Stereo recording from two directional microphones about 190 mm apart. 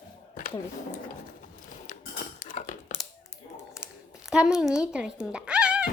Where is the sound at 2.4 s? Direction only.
45° left (ahead or behind).